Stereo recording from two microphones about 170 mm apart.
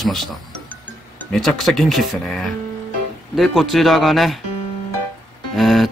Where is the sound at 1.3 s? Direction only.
Centre (ahead or behind).